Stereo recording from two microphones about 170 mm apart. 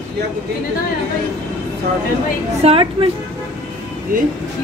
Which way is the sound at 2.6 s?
35° right (ahead or behind).